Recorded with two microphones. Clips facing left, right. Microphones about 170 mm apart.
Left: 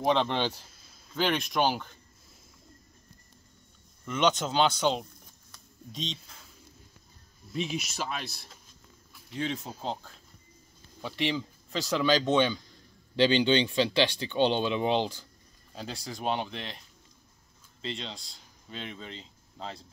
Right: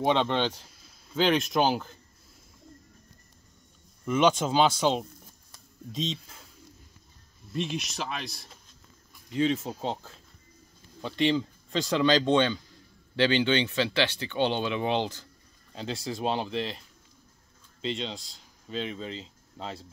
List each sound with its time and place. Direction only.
0.1 s speech: 5° left (ahead or behind)
4.0 s speech: 5° right (ahead or behind)
7.5 s speech: 5° left (ahead or behind)
11.0 s speech: 5° left (ahead or behind)
15.7 s speech: centre (ahead or behind)
17.8 s speech: centre (ahead or behind)